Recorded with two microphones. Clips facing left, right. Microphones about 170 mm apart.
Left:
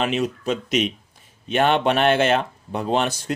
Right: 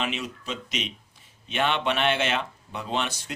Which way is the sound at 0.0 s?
45° left (ahead or behind).